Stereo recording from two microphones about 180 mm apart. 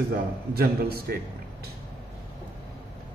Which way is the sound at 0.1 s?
60° right (ahead or behind).